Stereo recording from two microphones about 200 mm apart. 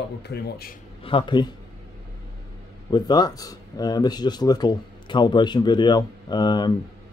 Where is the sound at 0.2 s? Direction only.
55° left (ahead or behind).